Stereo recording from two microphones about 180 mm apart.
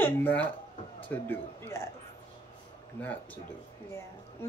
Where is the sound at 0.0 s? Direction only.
10° left (ahead or behind).